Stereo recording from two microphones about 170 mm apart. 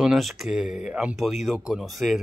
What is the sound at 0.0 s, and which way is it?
Speech, centre (ahead or behind).